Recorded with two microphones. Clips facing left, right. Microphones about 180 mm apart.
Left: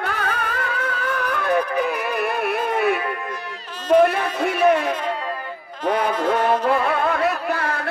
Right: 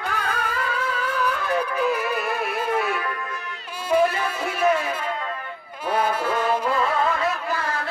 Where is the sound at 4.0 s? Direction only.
60° left (ahead or behind).